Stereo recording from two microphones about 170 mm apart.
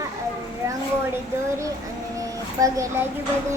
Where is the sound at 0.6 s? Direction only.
20° right (ahead or behind).